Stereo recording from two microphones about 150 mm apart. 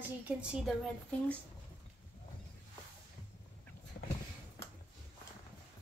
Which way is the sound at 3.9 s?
85° left.